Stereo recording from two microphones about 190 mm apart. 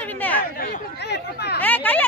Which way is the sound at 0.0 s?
10° left (ahead or behind).